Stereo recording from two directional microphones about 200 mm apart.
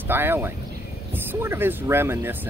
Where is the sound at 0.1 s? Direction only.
10° right (ahead or behind).